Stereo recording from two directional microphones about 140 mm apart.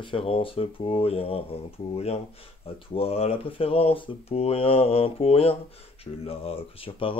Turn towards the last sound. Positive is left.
turn(degrees=40)  # may be behind; listen again after turning